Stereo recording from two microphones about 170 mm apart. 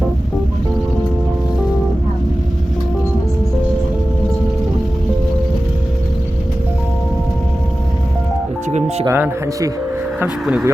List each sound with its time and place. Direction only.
9.0 s speech: 15° right (ahead or behind)